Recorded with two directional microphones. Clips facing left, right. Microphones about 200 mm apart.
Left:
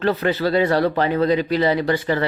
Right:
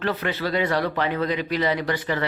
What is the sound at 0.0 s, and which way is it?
Speech, 30° left (ahead or behind).